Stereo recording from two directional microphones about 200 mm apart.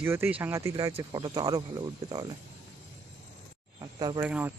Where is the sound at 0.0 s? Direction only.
10° right (ahead or behind).